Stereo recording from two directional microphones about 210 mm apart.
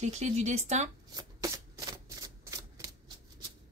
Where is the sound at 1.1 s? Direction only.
15° right (ahead or behind).